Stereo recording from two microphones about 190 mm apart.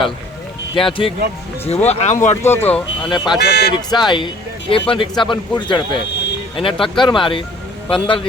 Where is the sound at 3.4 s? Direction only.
60° left (ahead or behind).